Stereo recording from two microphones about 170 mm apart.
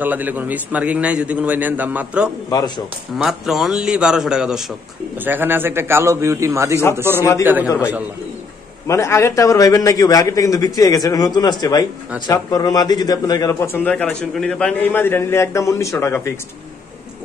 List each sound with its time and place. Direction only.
0.0 s a man's voice: 10° right (ahead or behind)
2.5 s a man's voice: 25° left (ahead or behind)
3.2 s a man's voice: 5° right (ahead or behind)
7.6 s a man's voice: 15° left (ahead or behind)